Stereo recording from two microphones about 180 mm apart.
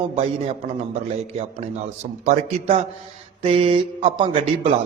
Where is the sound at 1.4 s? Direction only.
35° right (ahead or behind).